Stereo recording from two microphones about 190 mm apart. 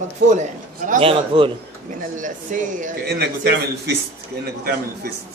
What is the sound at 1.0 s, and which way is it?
Speech, 25° right (ahead or behind).